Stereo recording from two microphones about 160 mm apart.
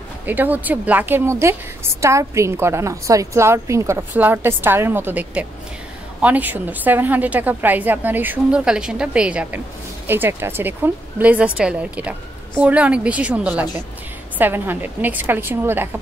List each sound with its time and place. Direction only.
0.3 s a woman's voice: 10° right (ahead or behind)